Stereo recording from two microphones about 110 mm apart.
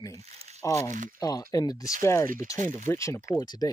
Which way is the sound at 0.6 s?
25° left (ahead or behind).